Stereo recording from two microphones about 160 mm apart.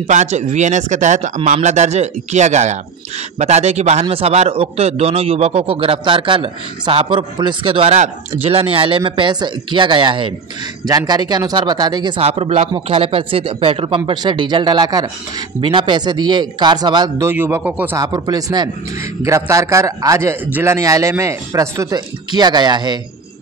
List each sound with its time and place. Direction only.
0.0 s a man's voice: 45° right (ahead or behind); by 12.2 s 25° right (ahead or behind)
12.2 s a man's voice: 40° right (ahead or behind)
17.3 s speech: 15° right (ahead or behind)
18.0 s a man's voice: 25° right (ahead or behind)